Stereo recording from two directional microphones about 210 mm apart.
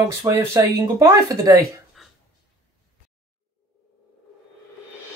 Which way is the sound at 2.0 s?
Centre (ahead or behind).